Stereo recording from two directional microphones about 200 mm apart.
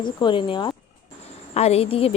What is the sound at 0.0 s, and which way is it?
A woman's voice, 25° left (ahead or behind).